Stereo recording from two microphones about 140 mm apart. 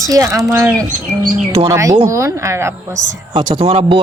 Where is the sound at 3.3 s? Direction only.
35° right (ahead or behind).